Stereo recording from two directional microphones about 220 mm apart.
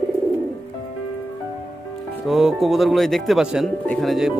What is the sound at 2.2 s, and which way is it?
Speech, centre (ahead or behind).